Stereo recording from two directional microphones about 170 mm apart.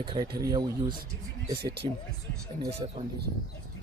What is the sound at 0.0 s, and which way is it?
Speech, 30° right (ahead or behind).